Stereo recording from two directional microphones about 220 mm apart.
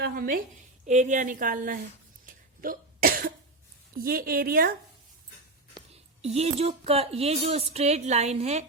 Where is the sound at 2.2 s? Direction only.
40° right (ahead or behind).